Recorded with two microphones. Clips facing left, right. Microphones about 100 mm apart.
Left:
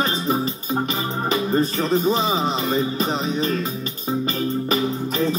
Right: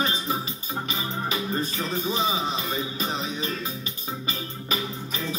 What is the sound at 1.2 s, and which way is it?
Speech, 50° left (ahead or behind).